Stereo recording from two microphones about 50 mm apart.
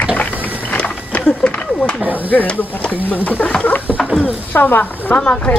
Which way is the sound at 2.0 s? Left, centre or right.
Right.